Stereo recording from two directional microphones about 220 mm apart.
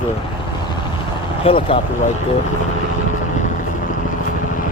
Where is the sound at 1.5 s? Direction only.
25° left (ahead or behind).